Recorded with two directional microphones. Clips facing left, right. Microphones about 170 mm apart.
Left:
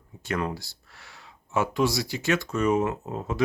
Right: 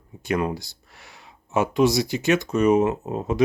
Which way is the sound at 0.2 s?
15° right (ahead or behind).